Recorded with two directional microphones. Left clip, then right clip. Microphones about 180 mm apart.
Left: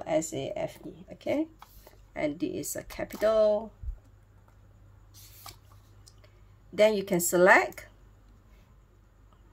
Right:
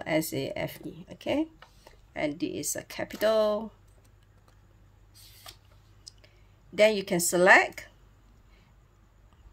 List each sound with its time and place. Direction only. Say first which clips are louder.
0.0 s speech: even; 30° right (ahead or behind)
6.2 s speech: right 1 dB; 5° right (ahead or behind)